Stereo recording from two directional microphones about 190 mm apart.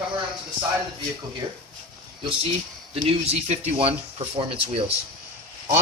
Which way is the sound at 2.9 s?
30° right (ahead or behind).